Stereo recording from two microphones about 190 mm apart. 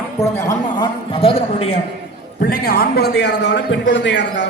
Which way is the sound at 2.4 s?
50° left (ahead or behind).